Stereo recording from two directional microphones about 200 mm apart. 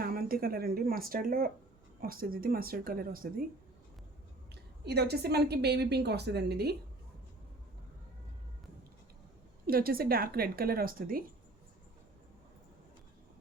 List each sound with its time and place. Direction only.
0.0 s a woman's voice: 45° right (ahead or behind)
4.9 s a woman's voice: 55° right (ahead or behind)
9.6 s speech: 50° right (ahead or behind)